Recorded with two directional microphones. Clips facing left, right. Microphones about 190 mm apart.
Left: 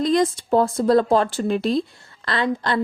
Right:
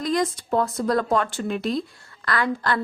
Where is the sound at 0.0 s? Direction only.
25° left (ahead or behind).